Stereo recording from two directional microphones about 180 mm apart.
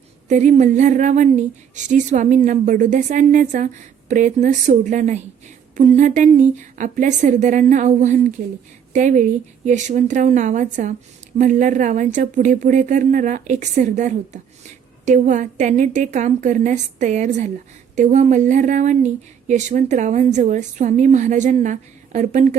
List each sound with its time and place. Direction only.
0.3 s a woman's voice: 40° right (ahead or behind)